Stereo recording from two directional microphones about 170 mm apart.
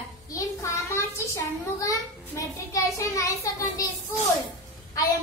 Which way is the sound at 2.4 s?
20° left (ahead or behind).